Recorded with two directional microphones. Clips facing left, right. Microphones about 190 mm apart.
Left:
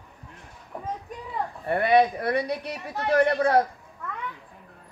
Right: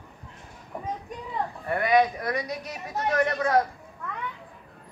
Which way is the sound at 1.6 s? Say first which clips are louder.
Left 2 dB; 30° left (ahead or behind).